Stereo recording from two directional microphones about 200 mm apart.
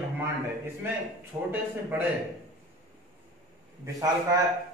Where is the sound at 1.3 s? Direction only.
20° right (ahead or behind).